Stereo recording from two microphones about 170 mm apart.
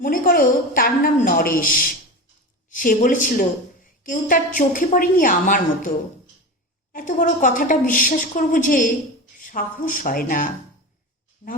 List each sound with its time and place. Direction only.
0.0 s a woman's voice: 55° left (ahead or behind)
6.9 s a woman's voice: 50° left (ahead or behind)